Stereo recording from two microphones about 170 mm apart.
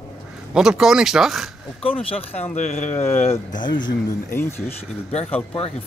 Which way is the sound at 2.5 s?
45° left (ahead or behind).